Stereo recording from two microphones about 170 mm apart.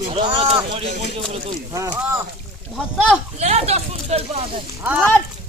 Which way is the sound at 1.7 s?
15° right (ahead or behind).